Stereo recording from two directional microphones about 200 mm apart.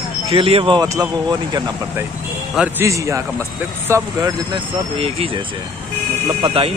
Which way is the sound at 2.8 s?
15° right (ahead or behind).